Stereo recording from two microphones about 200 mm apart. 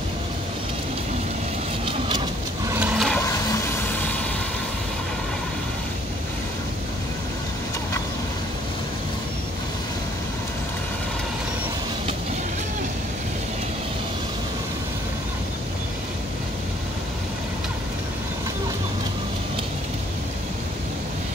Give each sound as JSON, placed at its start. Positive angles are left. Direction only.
{"t": 1.9, "sound": "vehicle", "side_deg": -25}
{"t": 2.7, "sound": "a sound", "side_deg": -5}
{"t": 3.7, "sound": "vehicle", "side_deg": 10}